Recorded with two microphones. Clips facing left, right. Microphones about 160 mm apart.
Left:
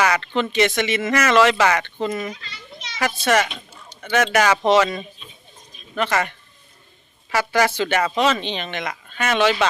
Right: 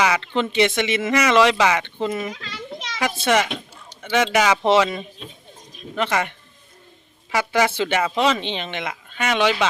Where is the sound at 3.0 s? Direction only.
15° right (ahead or behind).